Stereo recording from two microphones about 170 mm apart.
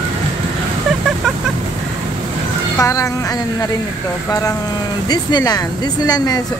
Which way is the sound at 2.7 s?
20° left (ahead or behind).